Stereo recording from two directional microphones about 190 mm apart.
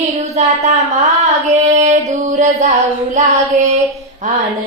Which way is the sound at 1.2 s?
40° right (ahead or behind).